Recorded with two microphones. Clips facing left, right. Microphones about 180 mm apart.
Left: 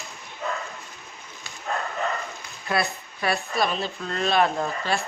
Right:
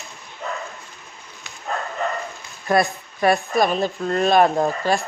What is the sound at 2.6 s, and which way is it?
Speech, 45° right (ahead or behind).